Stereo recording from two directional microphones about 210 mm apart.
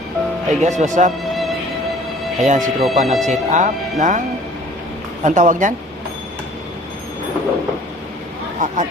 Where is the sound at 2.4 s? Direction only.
35° right (ahead or behind).